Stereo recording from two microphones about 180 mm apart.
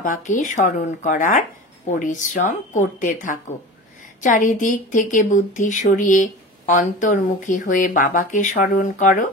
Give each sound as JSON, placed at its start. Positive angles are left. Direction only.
{"t": 0.0, "sound": "a woman's voice", "side_deg": 45}